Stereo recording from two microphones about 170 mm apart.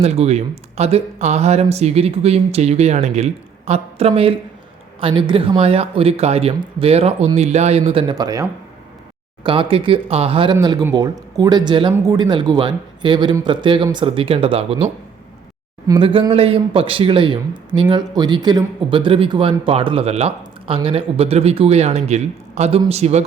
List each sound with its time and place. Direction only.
0.0 s speech: 40° right (ahead or behind)
8.0 s a man's voice: 20° right (ahead or behind)
15.9 s speech: 30° right (ahead or behind)